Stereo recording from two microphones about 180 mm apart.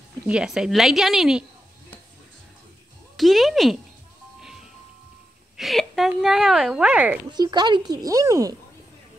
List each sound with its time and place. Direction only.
0.3 s speech: 5° right (ahead or behind)
3.2 s speech: centre (ahead or behind)
5.6 s speech: centre (ahead or behind)
7.2 s speech: 25° right (ahead or behind)